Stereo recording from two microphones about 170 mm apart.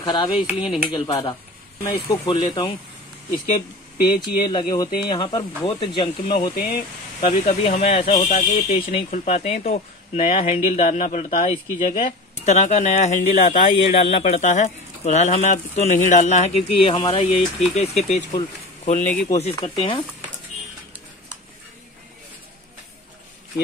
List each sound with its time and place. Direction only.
0.0 s speech: 30° left (ahead or behind)
0.4 s speech: 5° right (ahead or behind)
0.8 s speech: 25° left (ahead or behind)
6.5 s speech: 60° left (ahead or behind)
7.4 s speech: 35° left (ahead or behind)
13.7 s speech: 35° left (ahead or behind)
16.8 s speech: 25° left (ahead or behind)